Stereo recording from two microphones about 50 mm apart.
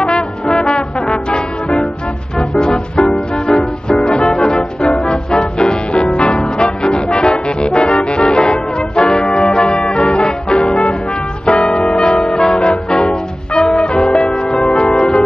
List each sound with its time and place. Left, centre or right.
0.0 s trombone: centre
2.6 s music: centre